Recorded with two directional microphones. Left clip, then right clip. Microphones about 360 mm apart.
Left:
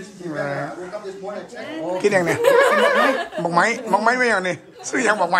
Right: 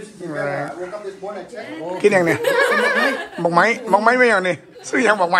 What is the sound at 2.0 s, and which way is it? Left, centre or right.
Speech, centre.